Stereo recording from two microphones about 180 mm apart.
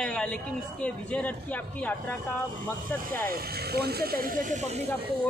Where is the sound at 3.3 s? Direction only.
60° right (ahead or behind); by 4.8 s 40° right (ahead or behind).